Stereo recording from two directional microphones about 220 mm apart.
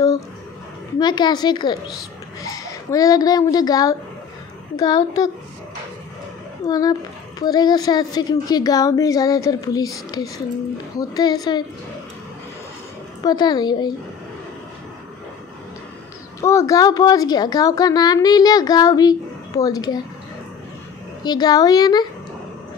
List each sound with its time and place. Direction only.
0.9 s a child's voice: 20° left (ahead or behind)
6.7 s a woman's voice: 15° left (ahead or behind)
13.2 s speech: 20° left (ahead or behind)
16.3 s a woman's voice: 15° left (ahead or behind)
21.2 s a woman's voice: 20° left (ahead or behind)